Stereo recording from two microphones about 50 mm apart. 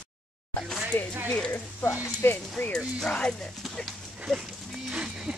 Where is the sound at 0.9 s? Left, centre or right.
Left.